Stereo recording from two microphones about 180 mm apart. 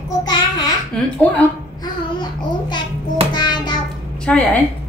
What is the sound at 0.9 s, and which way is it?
Speech, 5° left (ahead or behind).